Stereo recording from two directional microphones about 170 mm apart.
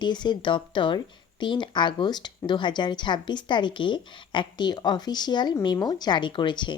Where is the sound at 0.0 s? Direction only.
25° left (ahead or behind).